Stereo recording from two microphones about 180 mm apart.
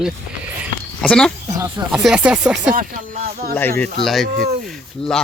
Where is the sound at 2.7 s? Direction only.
50° right (ahead or behind).